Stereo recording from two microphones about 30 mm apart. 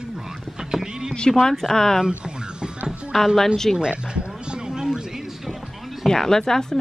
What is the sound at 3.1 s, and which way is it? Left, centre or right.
Speech, centre.